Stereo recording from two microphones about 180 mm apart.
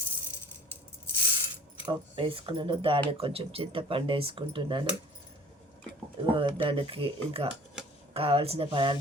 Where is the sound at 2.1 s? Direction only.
30° right (ahead or behind).